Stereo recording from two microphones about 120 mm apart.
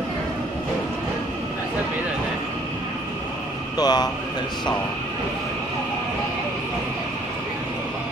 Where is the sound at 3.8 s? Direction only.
35° left (ahead or behind).